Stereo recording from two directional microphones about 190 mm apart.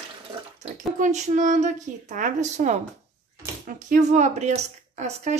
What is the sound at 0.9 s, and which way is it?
Speech, 40° right (ahead or behind).